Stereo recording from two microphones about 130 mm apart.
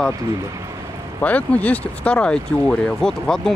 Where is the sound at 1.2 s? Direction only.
10° left (ahead or behind).